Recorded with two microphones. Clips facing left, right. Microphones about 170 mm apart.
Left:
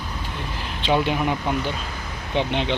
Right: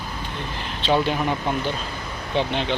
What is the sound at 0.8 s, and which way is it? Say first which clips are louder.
Speech: even; 10° left (ahead or behind).